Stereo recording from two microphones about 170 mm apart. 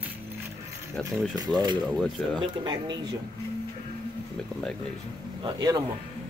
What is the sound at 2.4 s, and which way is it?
Speech, 25° right (ahead or behind).